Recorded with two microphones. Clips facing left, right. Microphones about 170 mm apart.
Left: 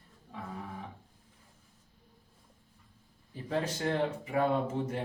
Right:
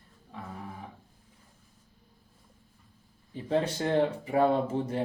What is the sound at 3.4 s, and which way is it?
Speech, 30° right (ahead or behind).